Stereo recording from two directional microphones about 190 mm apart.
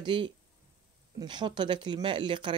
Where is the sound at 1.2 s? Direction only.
25° right (ahead or behind).